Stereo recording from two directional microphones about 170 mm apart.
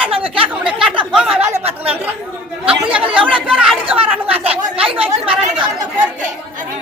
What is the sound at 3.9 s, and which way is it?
Chatter, 35° right (ahead or behind).